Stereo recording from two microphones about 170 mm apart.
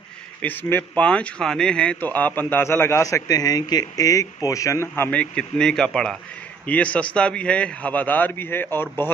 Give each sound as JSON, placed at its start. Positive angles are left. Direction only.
{"t": 0.4, "sound": "speech", "side_deg": 10}